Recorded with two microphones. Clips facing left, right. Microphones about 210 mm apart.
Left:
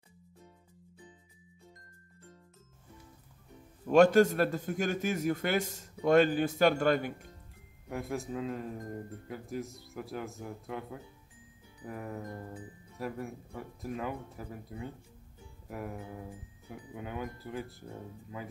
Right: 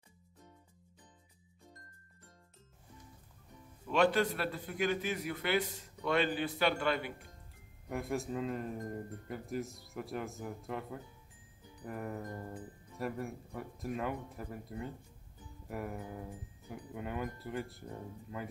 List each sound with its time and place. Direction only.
3.8 s a man's voice: 45° left (ahead or behind)
7.9 s speech: centre (ahead or behind)